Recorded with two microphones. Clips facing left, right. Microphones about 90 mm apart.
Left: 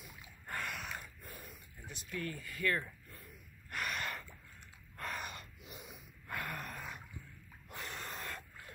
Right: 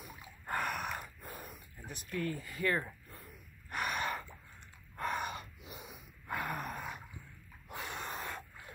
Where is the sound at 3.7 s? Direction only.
20° right (ahead or behind).